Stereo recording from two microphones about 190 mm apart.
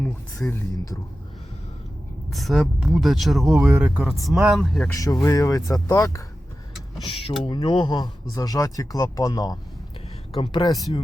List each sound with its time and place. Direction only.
0.0 s speech: 5° left (ahead or behind)
2.3 s speech: centre (ahead or behind)
4.9 s speech: 20° left (ahead or behind)
7.0 s speech: 30° left (ahead or behind)